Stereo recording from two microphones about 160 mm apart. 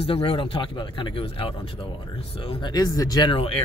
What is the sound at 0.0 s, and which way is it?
Speech, 35° left (ahead or behind).